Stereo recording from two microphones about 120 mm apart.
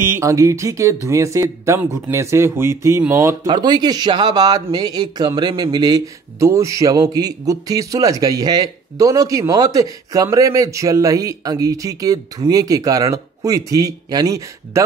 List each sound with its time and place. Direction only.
0.0 s speech: 25° right (ahead or behind)
3.4 s speech: 35° right (ahead or behind)